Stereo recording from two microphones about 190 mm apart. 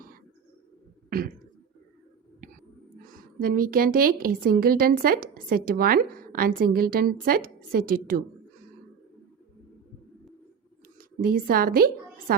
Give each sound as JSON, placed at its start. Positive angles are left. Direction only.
{"t": 3.1, "sound": "a woman's voice", "side_deg": -50}
{"t": 11.2, "sound": "a woman's voice", "side_deg": -50}